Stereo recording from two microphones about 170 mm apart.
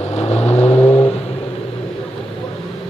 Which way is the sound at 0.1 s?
40° left (ahead or behind).